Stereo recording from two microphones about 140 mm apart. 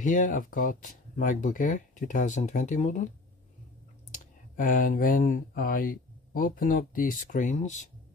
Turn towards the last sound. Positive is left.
turn(degrees=60)  # may be behind; listen again after turning